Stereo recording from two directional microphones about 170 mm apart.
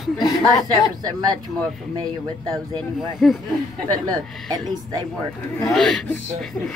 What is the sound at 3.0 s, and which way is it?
Speech, centre (ahead or behind).